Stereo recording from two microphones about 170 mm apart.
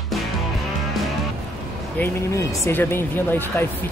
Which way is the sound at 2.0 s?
10° left (ahead or behind).